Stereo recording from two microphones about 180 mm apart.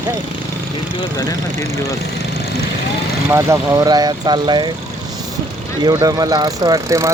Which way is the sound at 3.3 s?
15° right (ahead or behind).